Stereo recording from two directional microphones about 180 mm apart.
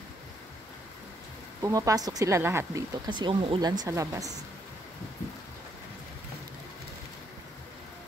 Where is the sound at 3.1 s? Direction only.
25° right (ahead or behind).